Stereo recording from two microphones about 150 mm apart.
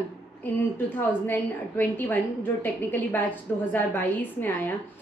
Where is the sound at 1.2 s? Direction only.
15° left (ahead or behind).